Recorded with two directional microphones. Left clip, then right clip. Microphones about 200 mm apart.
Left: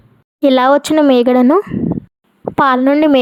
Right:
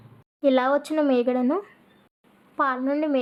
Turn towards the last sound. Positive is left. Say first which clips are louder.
# left 14 dB
turn(degrees=50)  # may be behind; listen again after turning